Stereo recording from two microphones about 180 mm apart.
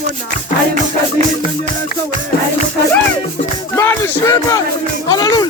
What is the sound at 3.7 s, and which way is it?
Music, 15° left (ahead or behind).